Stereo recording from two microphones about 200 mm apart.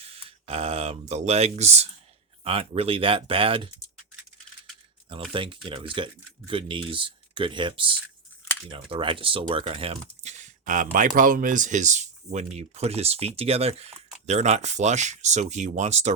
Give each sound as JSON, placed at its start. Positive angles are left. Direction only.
{"t": 0.0, "sound": "speech", "side_deg": -30}
{"t": 5.0, "sound": "speech", "side_deg": -25}